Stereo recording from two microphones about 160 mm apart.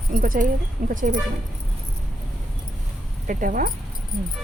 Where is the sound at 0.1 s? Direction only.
55° right (ahead or behind).